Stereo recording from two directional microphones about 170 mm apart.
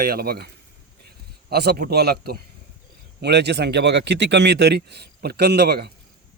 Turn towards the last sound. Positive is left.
turn(degrees=-70)  # may be behind; listen again after turning